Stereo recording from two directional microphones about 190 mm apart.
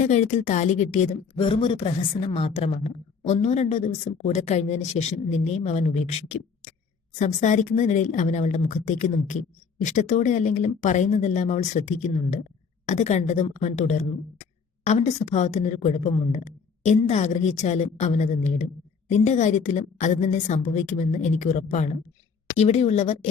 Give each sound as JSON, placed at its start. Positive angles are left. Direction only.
{"t": 0.0, "sound": "a woman's voice", "side_deg": 40}
{"t": 1.4, "sound": "a woman's voice", "side_deg": 25}